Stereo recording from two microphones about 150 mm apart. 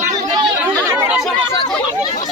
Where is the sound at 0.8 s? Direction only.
15° right (ahead or behind).